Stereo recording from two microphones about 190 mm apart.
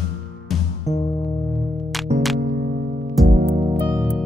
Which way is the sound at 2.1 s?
35° right (ahead or behind).